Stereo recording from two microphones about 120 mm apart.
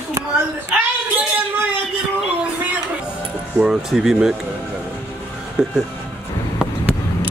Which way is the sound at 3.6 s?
5° right (ahead or behind).